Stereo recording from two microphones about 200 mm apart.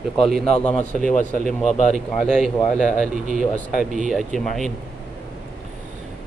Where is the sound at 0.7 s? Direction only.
35° left (ahead or behind).